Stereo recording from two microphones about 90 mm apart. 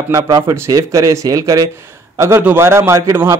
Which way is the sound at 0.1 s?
35° right (ahead or behind).